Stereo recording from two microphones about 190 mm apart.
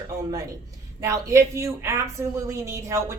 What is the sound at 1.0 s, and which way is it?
Speech, 15° right (ahead or behind).